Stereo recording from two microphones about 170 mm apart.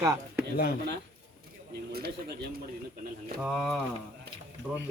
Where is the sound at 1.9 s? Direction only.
65° right (ahead or behind).